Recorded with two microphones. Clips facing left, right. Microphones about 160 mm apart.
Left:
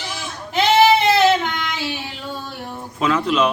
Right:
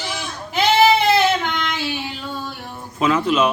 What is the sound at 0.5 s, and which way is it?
Child singing, centre (ahead or behind).